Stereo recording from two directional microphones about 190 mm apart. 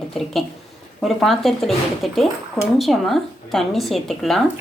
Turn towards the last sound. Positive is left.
turn(degrees=0)  # may be behind; listen again after turning